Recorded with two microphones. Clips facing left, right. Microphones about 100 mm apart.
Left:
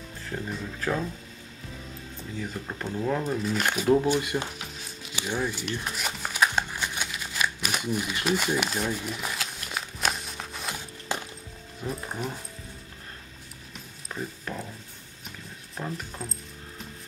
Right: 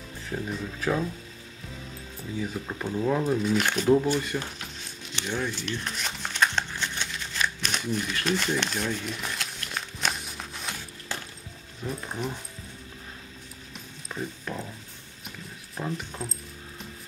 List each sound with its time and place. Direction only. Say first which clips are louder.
0.3 s speech: right 2 dB; centre (ahead or behind)
2.3 s speech: right 3 dB; 5° right (ahead or behind)
2.8 s a sound: right 2 dB; 5° right (ahead or behind)
11.1 s music: left 4 dB; 20° left (ahead or behind)
11.8 s speech: even; 5° left (ahead or behind)
13.7 s a sound: right 1 dB; centre (ahead or behind)
15.8 s speech: right 2 dB; centre (ahead or behind)